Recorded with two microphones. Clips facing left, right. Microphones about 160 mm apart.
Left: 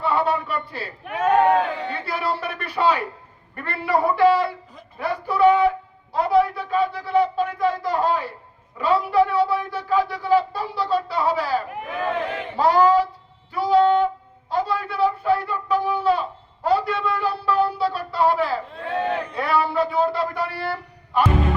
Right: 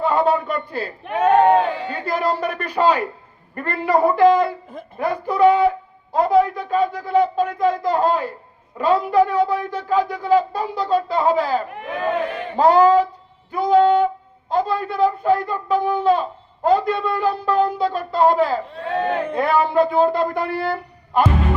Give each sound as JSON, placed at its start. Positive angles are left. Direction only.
{"t": 0.0, "sound": "a man's voice", "side_deg": -45}
{"t": 1.4, "sound": "speech", "side_deg": -20}
{"t": 2.0, "sound": "a man's voice", "side_deg": -45}